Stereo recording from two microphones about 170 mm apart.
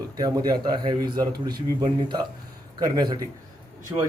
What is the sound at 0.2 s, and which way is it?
A man's voice, 25° right (ahead or behind).